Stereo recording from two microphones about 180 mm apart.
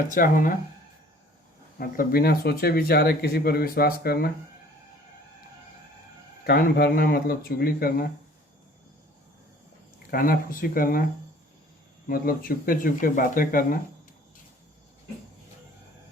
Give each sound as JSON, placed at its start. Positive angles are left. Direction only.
{"t": 0.1, "sound": "speech", "side_deg": 50}
{"t": 1.8, "sound": "speech", "side_deg": 55}
{"t": 6.4, "sound": "speech", "side_deg": 60}
{"t": 10.1, "sound": "speech", "side_deg": 55}
{"t": 12.0, "sound": "speech", "side_deg": 55}